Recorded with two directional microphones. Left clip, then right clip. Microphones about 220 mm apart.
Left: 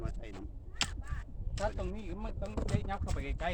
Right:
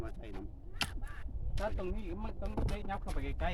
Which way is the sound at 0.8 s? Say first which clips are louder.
Left 2 dB; centre (ahead or behind).